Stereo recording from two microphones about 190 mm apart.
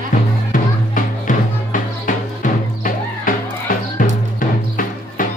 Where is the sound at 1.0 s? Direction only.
45° left (ahead or behind).